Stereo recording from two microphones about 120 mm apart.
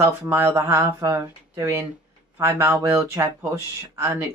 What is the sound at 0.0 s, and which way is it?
Speech, 20° right (ahead or behind).